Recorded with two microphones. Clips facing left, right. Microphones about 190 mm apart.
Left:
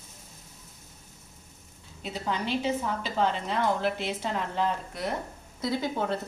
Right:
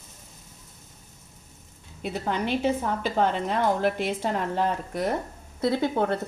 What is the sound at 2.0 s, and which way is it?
A woman's voice, 55° right (ahead or behind).